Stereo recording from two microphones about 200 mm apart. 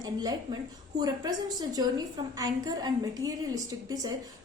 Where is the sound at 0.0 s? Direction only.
20° right (ahead or behind).